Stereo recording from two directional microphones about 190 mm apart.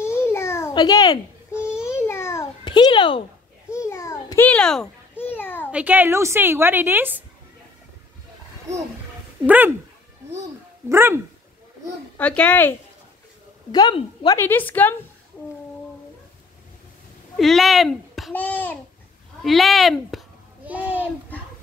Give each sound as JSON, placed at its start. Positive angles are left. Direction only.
{"t": 0.0, "sound": "babbling", "side_deg": 15}
{"t": 2.6, "sound": "a child's voice", "side_deg": 25}
{"t": 3.7, "sound": "babbling", "side_deg": 15}
{"t": 5.7, "sound": "a woman's voice", "side_deg": -5}
{"t": 8.7, "sound": "a woman's voice", "side_deg": -15}
{"t": 10.9, "sound": "a woman's voice", "side_deg": -10}
{"t": 12.2, "sound": "speech", "side_deg": 5}
{"t": 13.7, "sound": "a woman's voice", "side_deg": 25}
{"t": 14.4, "sound": "speech", "side_deg": 10}
{"t": 17.4, "sound": "a child's voice", "side_deg": 0}